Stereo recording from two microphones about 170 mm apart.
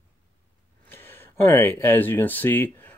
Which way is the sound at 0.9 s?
15° left (ahead or behind).